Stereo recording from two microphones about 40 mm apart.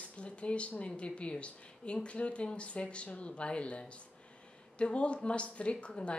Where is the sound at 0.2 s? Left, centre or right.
Left.